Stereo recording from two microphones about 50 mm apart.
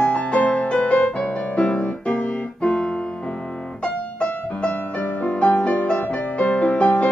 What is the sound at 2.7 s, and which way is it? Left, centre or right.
Music, centre.